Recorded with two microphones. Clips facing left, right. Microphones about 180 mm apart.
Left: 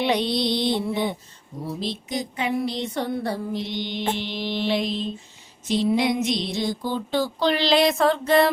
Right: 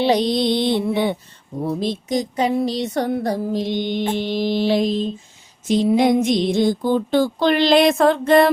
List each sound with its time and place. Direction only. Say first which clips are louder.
0.0 s mantra: right 5 dB; 35° right (ahead or behind)
0.3 s mantra: right 5 dB; 50° right (ahead or behind)
1.6 s music: right 7 dB; 50° right (ahead or behind)